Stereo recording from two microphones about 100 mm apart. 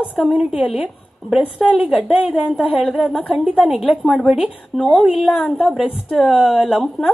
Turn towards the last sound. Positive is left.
turn(degrees=-5)  # may be behind; listen again after turning